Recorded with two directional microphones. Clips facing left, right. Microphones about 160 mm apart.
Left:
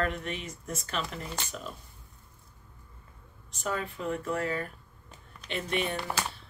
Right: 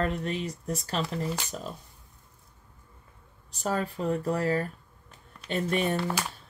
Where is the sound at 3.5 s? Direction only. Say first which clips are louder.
Right 4 dB; 35° right (ahead or behind).